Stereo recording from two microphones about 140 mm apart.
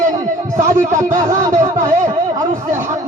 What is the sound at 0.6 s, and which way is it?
Speech, 20° right (ahead or behind).